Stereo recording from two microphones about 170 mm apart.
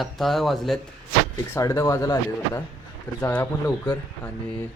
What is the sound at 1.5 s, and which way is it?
Speech, 15° left (ahead or behind).